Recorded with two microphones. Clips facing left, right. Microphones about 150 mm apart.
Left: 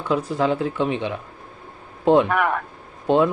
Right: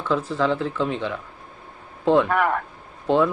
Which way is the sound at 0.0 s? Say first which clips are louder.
Left 1 dB; 15° left (ahead or behind).